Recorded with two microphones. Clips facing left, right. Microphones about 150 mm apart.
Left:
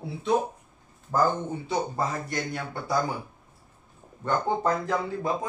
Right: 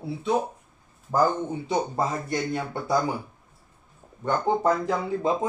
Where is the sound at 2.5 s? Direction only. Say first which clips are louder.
Right 4 dB; 20° right (ahead or behind).